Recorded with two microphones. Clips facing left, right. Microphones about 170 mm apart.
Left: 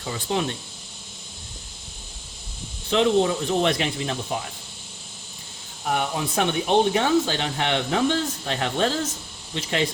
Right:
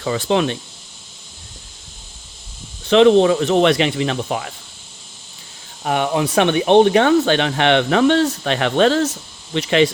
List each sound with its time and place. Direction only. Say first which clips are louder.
0.0 s speech: right 8 dB; 90° right
2.8 s speech: right 9 dB; 80° right
5.8 s speech: right 7 dB; 80° right